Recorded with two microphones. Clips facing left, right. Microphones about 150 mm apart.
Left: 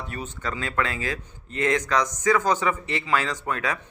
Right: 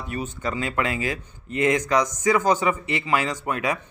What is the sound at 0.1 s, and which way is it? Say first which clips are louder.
Speech: right 7 dB; 10° right (ahead or behind).